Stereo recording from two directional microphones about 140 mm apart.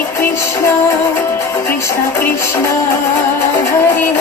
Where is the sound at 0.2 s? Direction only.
20° left (ahead or behind).